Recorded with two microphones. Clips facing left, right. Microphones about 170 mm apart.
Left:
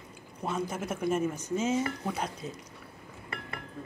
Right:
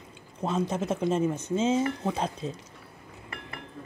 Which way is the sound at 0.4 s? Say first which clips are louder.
Right 5 dB; 25° right (ahead or behind).